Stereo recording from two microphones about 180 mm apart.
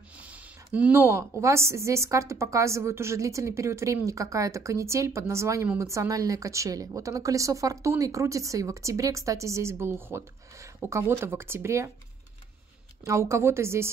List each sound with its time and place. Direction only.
0.2 s a woman's voice: 5° right (ahead or behind)
13.0 s a woman's voice: 15° right (ahead or behind)